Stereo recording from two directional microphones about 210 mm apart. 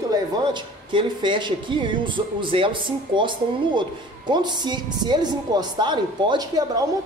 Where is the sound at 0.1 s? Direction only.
20° right (ahead or behind).